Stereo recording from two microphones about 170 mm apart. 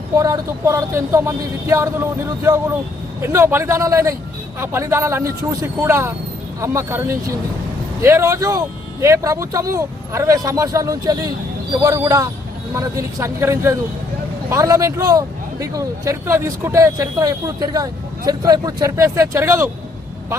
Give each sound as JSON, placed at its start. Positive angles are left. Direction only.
{"t": 0.2, "sound": "speech", "side_deg": -20}
{"t": 3.2, "sound": "speech", "side_deg": -15}